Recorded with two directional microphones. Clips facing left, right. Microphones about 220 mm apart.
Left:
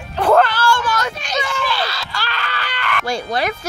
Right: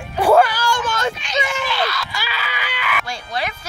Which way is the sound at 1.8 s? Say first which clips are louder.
Right 2 dB; 30° left (ahead or behind).